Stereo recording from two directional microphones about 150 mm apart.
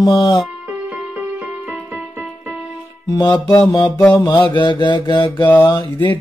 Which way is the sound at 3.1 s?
25° left (ahead or behind).